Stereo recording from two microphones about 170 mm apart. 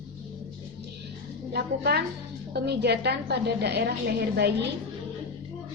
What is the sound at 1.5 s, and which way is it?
A woman's voice, 70° right (ahead or behind).